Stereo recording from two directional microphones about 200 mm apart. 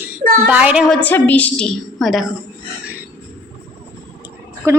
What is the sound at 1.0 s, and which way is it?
A woman's voice, 10° left (ahead or behind).